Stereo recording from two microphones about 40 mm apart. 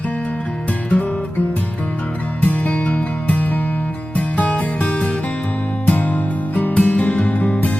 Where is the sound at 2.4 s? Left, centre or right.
Left.